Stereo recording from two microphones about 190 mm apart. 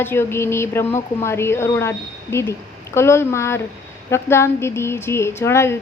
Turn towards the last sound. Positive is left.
turn(degrees=15)  # may be behind; listen again after turning